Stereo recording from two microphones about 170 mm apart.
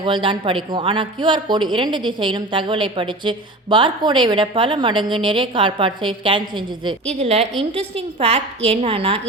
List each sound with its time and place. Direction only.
0.0 s speech: 30° right (ahead or behind)
7.1 s a woman's voice: 40° right (ahead or behind)